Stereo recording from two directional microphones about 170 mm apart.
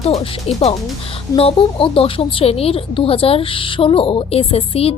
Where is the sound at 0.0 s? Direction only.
35° left (ahead or behind).